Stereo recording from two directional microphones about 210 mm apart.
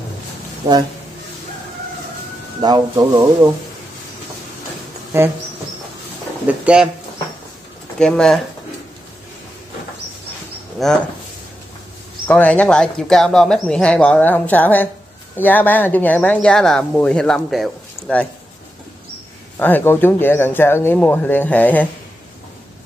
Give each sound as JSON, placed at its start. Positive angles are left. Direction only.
{"t": 2.6, "sound": "speech", "side_deg": -20}
{"t": 5.1, "sound": "speech", "side_deg": -10}
{"t": 6.4, "sound": "speech", "side_deg": -5}
{"t": 8.0, "sound": "speech", "side_deg": 5}
{"t": 10.8, "sound": "speech", "side_deg": 0}
{"t": 12.3, "sound": "speech", "side_deg": 5}
{"t": 19.6, "sound": "speech", "side_deg": 10}